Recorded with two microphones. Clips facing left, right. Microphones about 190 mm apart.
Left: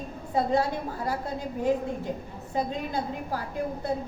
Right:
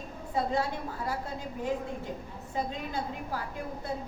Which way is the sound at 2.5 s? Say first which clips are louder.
Left 4 dB; 40° left (ahead or behind).